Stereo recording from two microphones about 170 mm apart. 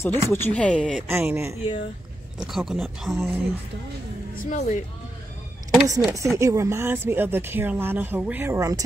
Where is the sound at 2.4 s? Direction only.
Centre (ahead or behind).